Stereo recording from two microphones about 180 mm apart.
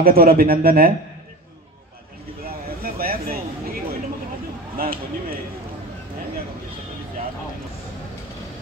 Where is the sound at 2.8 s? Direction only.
55° right (ahead or behind).